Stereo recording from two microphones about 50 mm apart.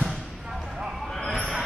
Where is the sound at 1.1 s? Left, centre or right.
Centre.